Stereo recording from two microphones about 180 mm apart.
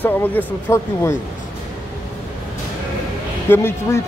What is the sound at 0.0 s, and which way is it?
Speech, 10° left (ahead or behind).